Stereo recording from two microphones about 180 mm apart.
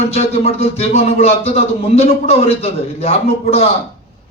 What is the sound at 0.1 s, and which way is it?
A man's voice, 35° left (ahead or behind).